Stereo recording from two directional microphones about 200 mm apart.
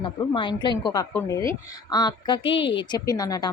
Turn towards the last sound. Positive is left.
turn(degrees=20)  # may be behind; listen again after turning